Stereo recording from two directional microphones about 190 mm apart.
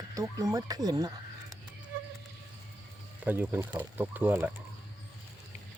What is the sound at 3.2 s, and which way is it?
Speech, 10° right (ahead or behind).